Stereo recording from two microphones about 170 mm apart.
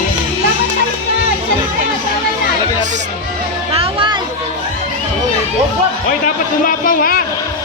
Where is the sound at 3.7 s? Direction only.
30° right (ahead or behind).